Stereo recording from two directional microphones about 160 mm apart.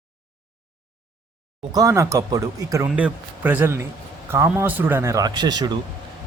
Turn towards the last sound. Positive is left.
turn(degrees=-25)  # may be behind; listen again after turning